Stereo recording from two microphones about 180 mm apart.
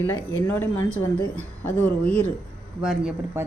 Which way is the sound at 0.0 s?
15° left (ahead or behind).